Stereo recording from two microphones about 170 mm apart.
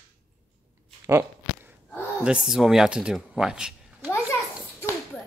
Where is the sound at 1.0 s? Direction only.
15° right (ahead or behind).